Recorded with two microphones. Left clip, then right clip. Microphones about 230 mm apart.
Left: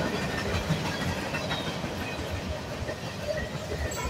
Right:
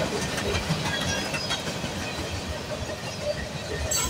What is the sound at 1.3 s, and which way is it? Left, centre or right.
Train, right.